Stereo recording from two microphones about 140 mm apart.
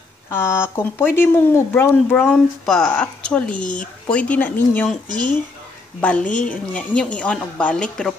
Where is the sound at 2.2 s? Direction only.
5° left (ahead or behind).